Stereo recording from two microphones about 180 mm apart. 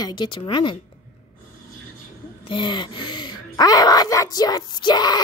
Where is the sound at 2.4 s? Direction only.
25° left (ahead or behind).